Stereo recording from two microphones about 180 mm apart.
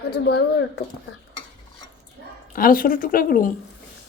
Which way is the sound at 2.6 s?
50° left (ahead or behind).